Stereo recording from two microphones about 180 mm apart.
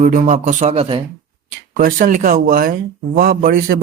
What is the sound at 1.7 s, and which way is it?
Speech, 45° right (ahead or behind).